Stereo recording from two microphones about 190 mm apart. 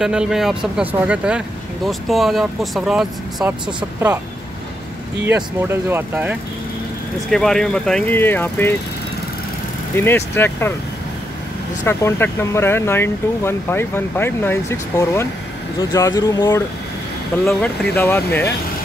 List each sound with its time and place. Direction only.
0.0 s speech: 5° right (ahead or behind)
5.3 s speech: 10° right (ahead or behind)
7.2 s speech: 5° left (ahead or behind)
9.9 s speech: 10° left (ahead or behind)
11.8 s speech: 15° left (ahead or behind)